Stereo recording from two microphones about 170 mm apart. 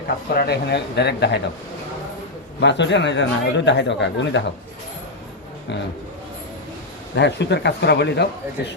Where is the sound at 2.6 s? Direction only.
90° left.